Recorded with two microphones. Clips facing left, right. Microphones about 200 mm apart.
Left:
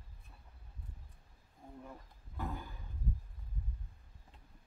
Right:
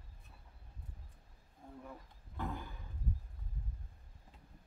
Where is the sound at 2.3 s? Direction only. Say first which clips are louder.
Even; centre (ahead or behind).